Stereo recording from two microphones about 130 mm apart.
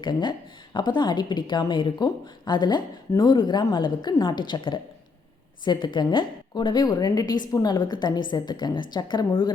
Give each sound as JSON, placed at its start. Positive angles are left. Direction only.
{"t": 0.0, "sound": "speech", "side_deg": 35}